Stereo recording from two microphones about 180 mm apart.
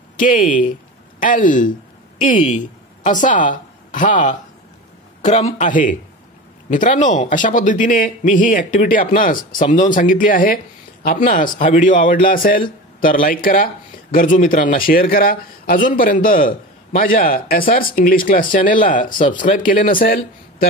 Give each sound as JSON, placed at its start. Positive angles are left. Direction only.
{"t": 0.2, "sound": "a man's voice", "side_deg": 50}